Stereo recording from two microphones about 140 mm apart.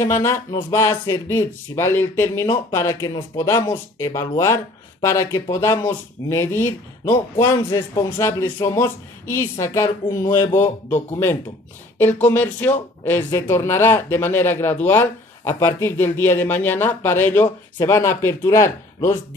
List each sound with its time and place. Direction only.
0.0 s speech: 20° left (ahead or behind)
12.0 s speech: 15° left (ahead or behind)